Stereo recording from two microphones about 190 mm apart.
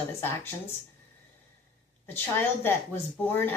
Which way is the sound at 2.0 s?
10° left (ahead or behind).